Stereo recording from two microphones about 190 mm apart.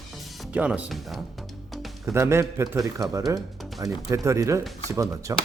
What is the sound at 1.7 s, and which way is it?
Music, centre (ahead or behind).